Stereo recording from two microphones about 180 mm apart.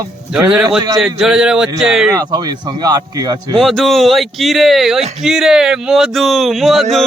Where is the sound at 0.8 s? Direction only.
20° right (ahead or behind).